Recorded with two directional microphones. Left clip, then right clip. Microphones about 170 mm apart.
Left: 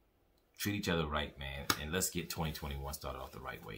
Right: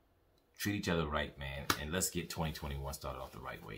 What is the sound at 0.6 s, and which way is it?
Speech, 5° left (ahead or behind).